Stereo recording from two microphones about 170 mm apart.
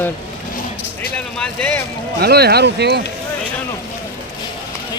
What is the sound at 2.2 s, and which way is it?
Speech, 70° right (ahead or behind).